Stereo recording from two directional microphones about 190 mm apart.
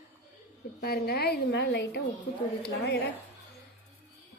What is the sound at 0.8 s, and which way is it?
A woman's voice, 55° left (ahead or behind).